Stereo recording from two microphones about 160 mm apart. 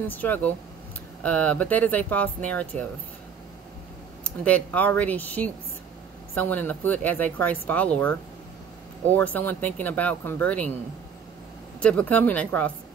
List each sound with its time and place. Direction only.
0.1 s speech: 10° left (ahead or behind)
4.2 s speech: 10° left (ahead or behind)
11.8 s speech: 10° left (ahead or behind)